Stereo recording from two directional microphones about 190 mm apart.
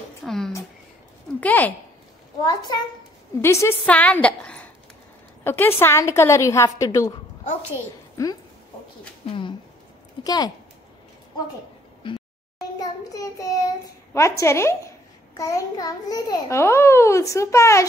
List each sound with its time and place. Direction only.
0.2 s a sound: centre (ahead or behind)
1.4 s speech: 10° left (ahead or behind)
2.4 s a woman's voice: 20° left (ahead or behind)
8.2 s a child's voice: 15° left (ahead or behind)
9.2 s a sound: 30° left (ahead or behind)
10.2 s a woman's voice: 20° left (ahead or behind)
12.0 s child singing: 25° left (ahead or behind)
14.1 s a child's voice: 15° left (ahead or behind)